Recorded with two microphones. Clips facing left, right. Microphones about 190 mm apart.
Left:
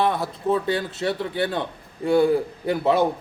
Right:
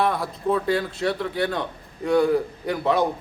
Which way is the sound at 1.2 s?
25° left (ahead or behind).